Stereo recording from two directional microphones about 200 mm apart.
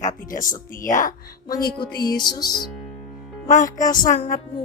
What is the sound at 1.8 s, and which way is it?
Music, 20° left (ahead or behind).